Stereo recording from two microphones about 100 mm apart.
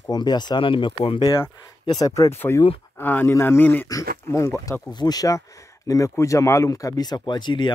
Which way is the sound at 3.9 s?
30° left (ahead or behind).